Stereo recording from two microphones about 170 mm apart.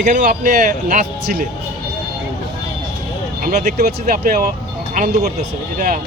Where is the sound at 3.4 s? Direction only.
55° right (ahead or behind).